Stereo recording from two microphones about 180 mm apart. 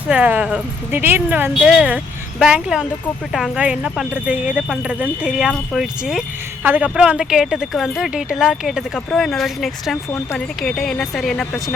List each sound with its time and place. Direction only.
0.1 s speech: 5° right (ahead or behind)